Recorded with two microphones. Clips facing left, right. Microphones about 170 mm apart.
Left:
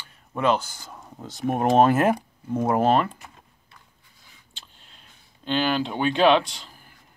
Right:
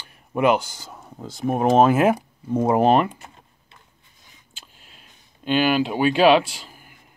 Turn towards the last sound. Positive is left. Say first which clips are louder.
# right 3 dB
turn(degrees=-10)  # may be behind; listen again after turning